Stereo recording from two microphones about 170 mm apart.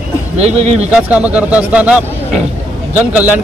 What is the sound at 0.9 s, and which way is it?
A man's voice, 10° right (ahead or behind).